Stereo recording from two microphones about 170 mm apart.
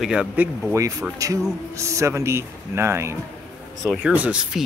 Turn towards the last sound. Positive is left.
turn(degrees=-5)  # may be behind; listen again after turning